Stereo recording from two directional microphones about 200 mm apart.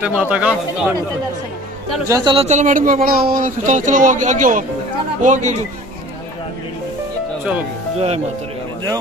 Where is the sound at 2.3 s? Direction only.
35° right (ahead or behind).